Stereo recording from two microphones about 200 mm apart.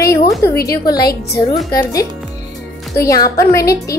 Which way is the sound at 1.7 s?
15° left (ahead or behind).